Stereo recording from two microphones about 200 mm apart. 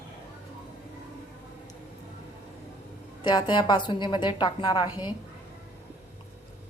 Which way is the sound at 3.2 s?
20° left (ahead or behind).